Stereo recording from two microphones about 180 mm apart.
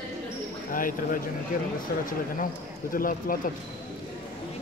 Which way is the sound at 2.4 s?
50° left (ahead or behind).